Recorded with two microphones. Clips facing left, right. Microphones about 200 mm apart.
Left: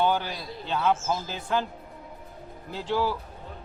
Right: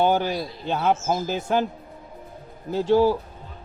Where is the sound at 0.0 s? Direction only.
45° right (ahead or behind).